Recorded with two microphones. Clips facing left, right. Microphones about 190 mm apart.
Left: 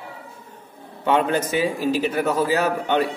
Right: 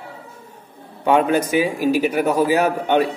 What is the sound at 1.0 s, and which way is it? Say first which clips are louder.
A man's voice: right 3 dB; 10° right (ahead or behind).